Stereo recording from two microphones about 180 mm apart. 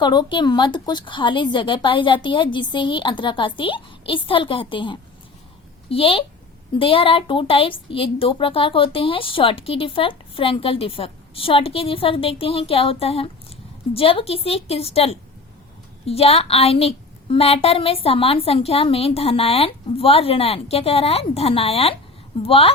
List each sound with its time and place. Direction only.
0.0 s a woman's voice: 25° left (ahead or behind)